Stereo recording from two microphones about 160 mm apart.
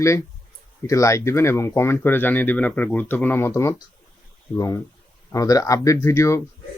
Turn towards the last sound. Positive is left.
turn(degrees=20)  # may be behind; listen again after turning